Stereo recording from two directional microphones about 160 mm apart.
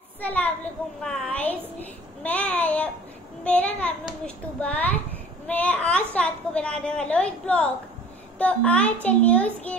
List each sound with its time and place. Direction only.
0.2 s a woman's voice: 10° left (ahead or behind)